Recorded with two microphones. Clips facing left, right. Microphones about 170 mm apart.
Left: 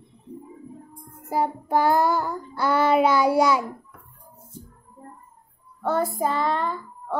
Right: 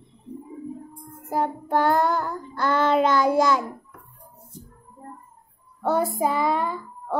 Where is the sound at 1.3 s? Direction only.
5° left (ahead or behind).